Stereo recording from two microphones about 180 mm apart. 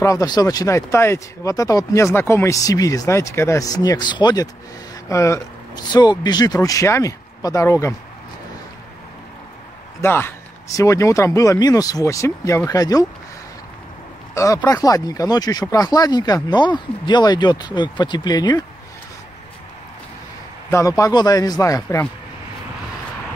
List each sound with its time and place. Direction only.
0.0 s speech: 20° left (ahead or behind)
10.0 s speech: 15° left (ahead or behind)
14.3 s speech: 15° left (ahead or behind)
20.7 s speech: 20° left (ahead or behind)